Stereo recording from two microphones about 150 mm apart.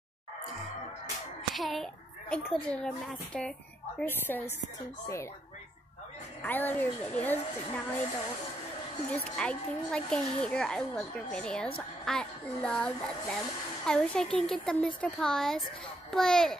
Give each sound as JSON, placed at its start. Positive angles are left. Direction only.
{"t": 1.5, "sound": "a sound", "side_deg": 0}
{"t": 2.5, "sound": "a woman's voice", "side_deg": 5}
{"t": 6.4, "sound": "a woman's voice", "side_deg": 10}
{"t": 9.1, "sound": "speech", "side_deg": 10}